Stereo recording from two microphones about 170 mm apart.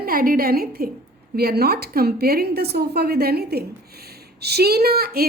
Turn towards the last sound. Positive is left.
turn(degrees=-65)  # may be behind; listen again after turning